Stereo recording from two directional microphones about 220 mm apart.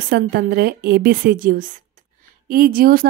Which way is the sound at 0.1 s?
45° right (ahead or behind).